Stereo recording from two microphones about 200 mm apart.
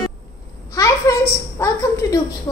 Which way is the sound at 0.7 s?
15° left (ahead or behind).